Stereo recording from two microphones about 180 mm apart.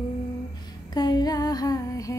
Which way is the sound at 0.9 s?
20° left (ahead or behind).